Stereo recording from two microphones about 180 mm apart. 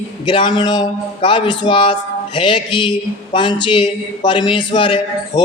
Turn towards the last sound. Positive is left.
turn(degrees=25)  # may be behind; listen again after turning